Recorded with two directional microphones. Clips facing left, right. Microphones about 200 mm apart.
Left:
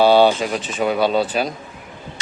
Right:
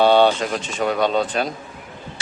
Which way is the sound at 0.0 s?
5° left (ahead or behind).